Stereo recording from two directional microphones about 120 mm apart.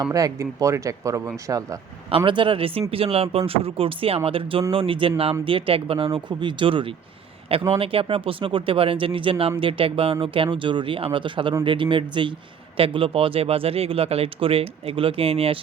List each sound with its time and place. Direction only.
0.0 s speech: 30° right (ahead or behind)
2.0 s speech: 45° right (ahead or behind)